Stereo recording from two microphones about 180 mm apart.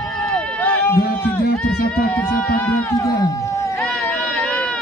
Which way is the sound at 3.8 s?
5° left (ahead or behind).